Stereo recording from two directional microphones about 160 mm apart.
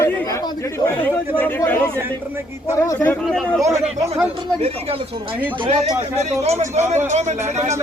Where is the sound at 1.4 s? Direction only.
15° left (ahead or behind).